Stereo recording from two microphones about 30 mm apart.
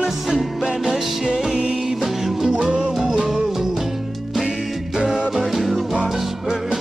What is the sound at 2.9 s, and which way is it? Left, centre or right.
Music, centre.